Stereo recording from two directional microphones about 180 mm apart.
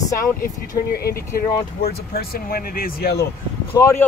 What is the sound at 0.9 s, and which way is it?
Speech, 55° left (ahead or behind).